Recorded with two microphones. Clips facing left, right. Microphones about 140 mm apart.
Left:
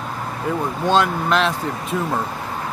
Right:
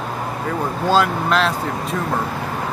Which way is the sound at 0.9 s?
Centre (ahead or behind).